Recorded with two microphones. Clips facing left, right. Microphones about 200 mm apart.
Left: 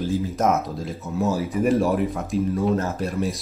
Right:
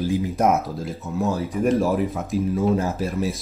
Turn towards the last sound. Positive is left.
turn(degrees=0)  # may be behind; listen again after turning